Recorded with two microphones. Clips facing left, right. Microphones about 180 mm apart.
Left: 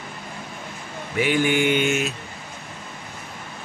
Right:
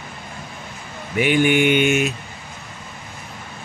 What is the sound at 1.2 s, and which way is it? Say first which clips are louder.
Mantra: right 4 dB; 20° right (ahead or behind).